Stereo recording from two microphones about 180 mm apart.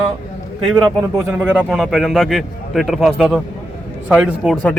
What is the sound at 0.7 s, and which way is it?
Speech, 25° right (ahead or behind).